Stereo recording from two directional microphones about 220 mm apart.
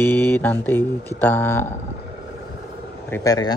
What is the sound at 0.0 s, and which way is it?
Mantra, 10° left (ahead or behind).